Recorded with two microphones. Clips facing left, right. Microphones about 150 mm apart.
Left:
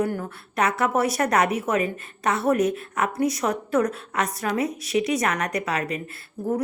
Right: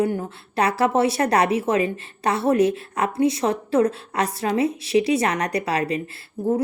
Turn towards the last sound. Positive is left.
turn(degrees=-20)  # may be behind; listen again after turning